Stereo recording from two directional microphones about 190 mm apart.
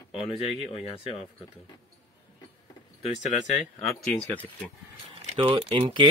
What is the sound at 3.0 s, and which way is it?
Speech, 40° left (ahead or behind).